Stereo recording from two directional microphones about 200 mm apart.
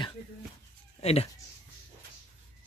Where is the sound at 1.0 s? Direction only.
30° left (ahead or behind).